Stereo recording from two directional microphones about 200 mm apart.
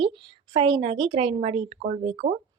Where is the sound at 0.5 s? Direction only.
25° right (ahead or behind).